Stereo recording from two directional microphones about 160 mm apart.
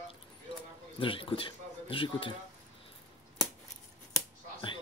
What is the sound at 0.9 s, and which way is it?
A man's voice, 35° left (ahead or behind).